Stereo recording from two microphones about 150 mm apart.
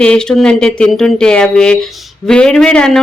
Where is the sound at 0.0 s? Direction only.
5° left (ahead or behind).